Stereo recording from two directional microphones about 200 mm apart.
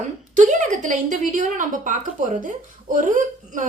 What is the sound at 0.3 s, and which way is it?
A woman's voice, 40° right (ahead or behind).